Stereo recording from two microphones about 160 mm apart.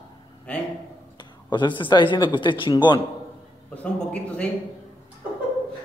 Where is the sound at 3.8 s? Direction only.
5° left (ahead or behind).